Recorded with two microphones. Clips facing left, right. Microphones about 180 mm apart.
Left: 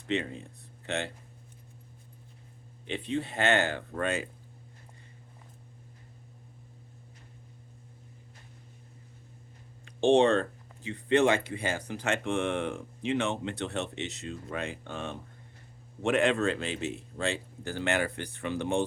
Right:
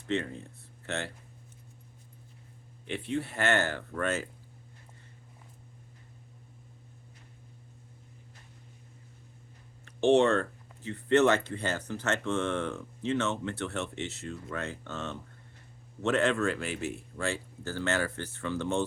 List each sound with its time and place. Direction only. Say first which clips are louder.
0.1 s speech: even; 15° left (ahead or behind)
2.8 s speech: left 1 dB; 20° left (ahead or behind)
9.8 s a sound: left 1 dB; 15° left (ahead or behind)
10.8 s speech: right 1 dB; 15° left (ahead or behind)